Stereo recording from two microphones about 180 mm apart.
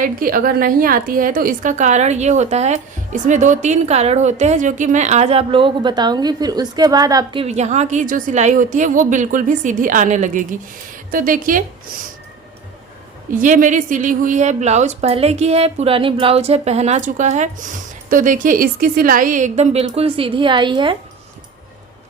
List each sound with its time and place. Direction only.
0.0 s a woman's voice: 50° right (ahead or behind)
13.4 s a woman's voice: 45° right (ahead or behind); by 20.9 s 25° right (ahead or behind)